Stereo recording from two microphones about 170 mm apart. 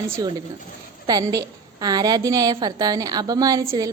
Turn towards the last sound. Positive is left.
turn(degrees=-20)  # may be behind; listen again after turning